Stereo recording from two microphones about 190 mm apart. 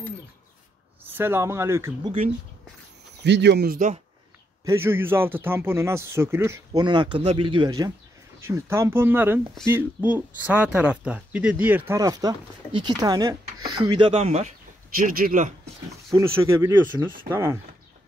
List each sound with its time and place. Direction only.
1.0 s speech: 10° right (ahead or behind)
3.3 s speech: 65° right (ahead or behind)
4.6 s speech: 15° right (ahead or behind); by 14.5 s 35° right (ahead or behind)
15.0 s speech: 45° right (ahead or behind)
16.1 s speech: 15° right (ahead or behind)